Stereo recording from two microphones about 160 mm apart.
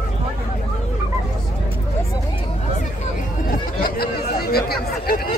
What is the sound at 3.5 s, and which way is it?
Chatter, 65° left (ahead or behind).